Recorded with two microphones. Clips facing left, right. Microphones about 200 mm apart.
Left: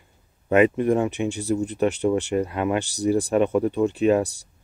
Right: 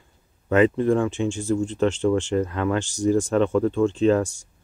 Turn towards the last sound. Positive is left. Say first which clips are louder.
# right 1 dB
turn(degrees=15)  # may be behind; listen again after turning